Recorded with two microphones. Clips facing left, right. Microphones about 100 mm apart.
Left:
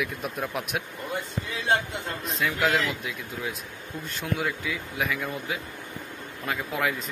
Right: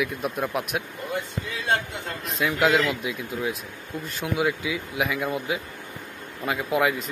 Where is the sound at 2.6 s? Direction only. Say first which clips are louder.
Right 5 dB; 5° right (ahead or behind).